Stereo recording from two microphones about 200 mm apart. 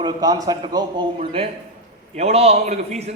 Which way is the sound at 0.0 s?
20° right (ahead or behind).